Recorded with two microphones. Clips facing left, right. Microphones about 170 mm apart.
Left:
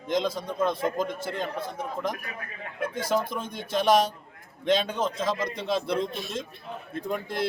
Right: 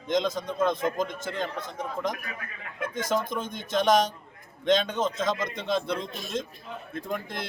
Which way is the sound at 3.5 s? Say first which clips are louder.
Left 1 dB; 5° left (ahead or behind).